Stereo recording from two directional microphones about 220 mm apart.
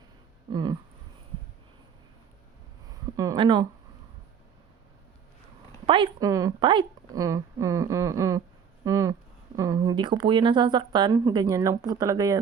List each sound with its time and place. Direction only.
0.5 s speech: 20° right (ahead or behind)
3.2 s a sound: 20° right (ahead or behind)
5.8 s speech: 25° right (ahead or behind)